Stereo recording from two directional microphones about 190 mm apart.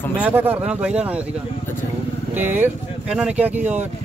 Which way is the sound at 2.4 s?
10° right (ahead or behind).